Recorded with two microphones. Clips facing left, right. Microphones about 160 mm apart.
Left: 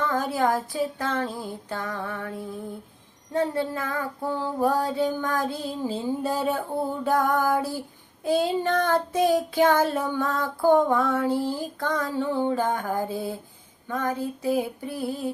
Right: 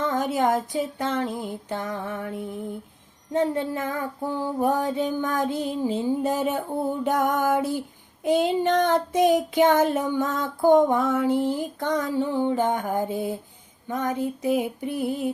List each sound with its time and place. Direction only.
0.0 s child singing: 20° right (ahead or behind)
3.3 s child singing: 20° right (ahead or behind)